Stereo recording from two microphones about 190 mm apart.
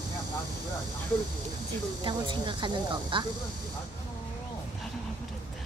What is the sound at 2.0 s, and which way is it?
Speech, 25° right (ahead or behind).